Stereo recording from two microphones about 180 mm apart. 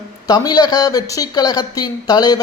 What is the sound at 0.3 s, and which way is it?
Speech, 20° left (ahead or behind).